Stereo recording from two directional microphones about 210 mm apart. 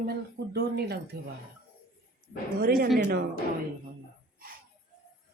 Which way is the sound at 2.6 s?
45° right (ahead or behind).